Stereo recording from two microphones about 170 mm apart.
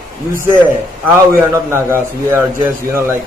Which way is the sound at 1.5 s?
15° right (ahead or behind).